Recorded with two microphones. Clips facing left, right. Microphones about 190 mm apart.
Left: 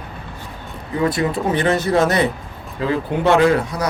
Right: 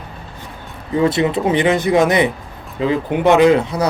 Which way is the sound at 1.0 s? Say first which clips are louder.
Right 3 dB; 25° right (ahead or behind).